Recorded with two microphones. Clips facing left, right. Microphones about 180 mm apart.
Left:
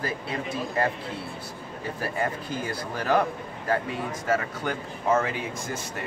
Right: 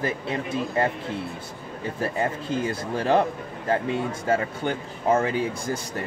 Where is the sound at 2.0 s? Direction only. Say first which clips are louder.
Right 3 dB; 25° right (ahead or behind).